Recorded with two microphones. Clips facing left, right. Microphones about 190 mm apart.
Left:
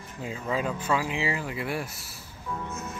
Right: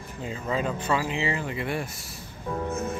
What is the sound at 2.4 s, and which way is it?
Music, 40° right (ahead or behind).